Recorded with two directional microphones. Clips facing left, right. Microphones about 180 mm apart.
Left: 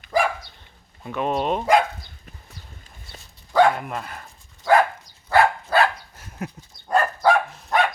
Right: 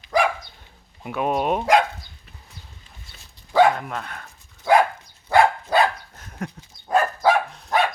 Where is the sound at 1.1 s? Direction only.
10° right (ahead or behind).